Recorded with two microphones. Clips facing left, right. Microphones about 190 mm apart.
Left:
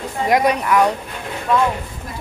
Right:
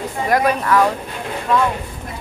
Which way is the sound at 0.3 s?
20° left (ahead or behind).